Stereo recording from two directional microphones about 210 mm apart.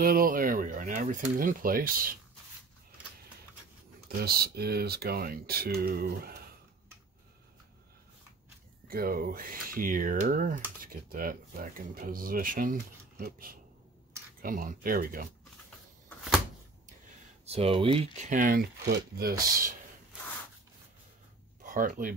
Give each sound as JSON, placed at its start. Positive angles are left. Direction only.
{"t": 0.0, "sound": "speech", "side_deg": -45}
{"t": 4.1, "sound": "speech", "side_deg": -45}
{"t": 8.8, "sound": "speech", "side_deg": -45}
{"t": 17.5, "sound": "speech", "side_deg": -30}
{"t": 18.3, "sound": "speech", "side_deg": -40}
{"t": 21.6, "sound": "speech", "side_deg": -40}